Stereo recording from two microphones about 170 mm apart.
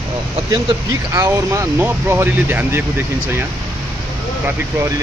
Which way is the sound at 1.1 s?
15° right (ahead or behind).